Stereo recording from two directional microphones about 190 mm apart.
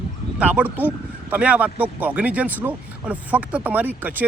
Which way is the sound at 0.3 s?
5° right (ahead or behind).